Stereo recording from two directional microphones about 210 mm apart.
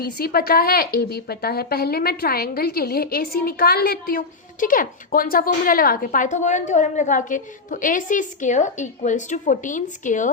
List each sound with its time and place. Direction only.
0.0 s a woman's voice: 45° left (ahead or behind)